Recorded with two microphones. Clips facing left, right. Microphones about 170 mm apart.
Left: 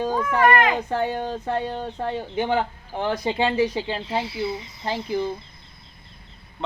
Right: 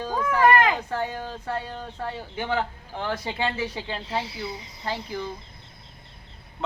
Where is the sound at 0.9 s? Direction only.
20° left (ahead or behind).